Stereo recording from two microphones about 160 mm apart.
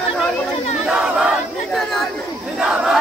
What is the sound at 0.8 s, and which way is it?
Battle cry, 5° right (ahead or behind).